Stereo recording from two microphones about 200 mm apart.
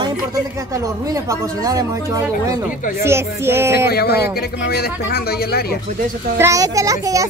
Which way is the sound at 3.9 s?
50° left (ahead or behind).